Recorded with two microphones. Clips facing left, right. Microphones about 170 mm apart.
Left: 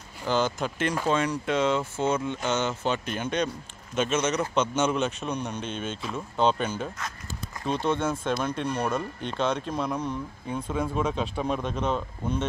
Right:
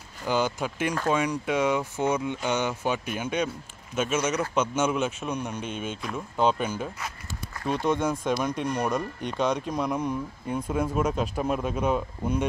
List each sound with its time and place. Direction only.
0.2 s speech: 10° right (ahead or behind)